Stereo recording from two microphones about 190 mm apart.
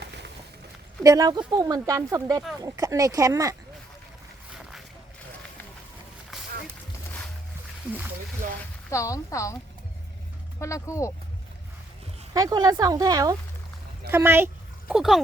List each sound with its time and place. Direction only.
0.0 s a sound: 65° right (ahead or behind)
1.0 s speech: 20° right (ahead or behind)
8.9 s speech: 15° left (ahead or behind)
10.6 s speech: 15° left (ahead or behind)
12.3 s speech: 20° right (ahead or behind); by 15.2 s centre (ahead or behind)